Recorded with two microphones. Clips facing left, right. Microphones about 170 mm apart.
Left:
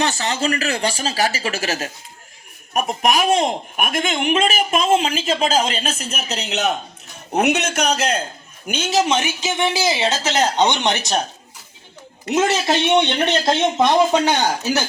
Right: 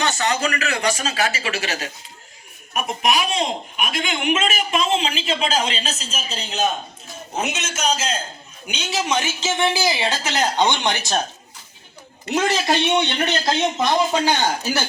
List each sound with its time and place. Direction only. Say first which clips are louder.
0.0 s speech: left 1 dB; 30° left (ahead or behind); by 6.7 s 75° left (ahead or behind)
7.3 s a man's voice: left 8 dB; 65° left (ahead or behind)
8.6 s speech: left 6 dB; 45° left (ahead or behind)
9.0 s speech: left 2 dB; 20° left (ahead or behind)
12.3 s speech: left 2 dB; 20° left (ahead or behind)